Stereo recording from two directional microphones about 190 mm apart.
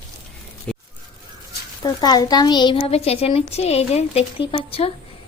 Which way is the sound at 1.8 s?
20° left (ahead or behind).